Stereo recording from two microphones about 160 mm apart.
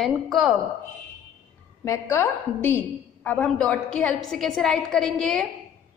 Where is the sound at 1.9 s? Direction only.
15° left (ahead or behind); by 5.5 s centre (ahead or behind).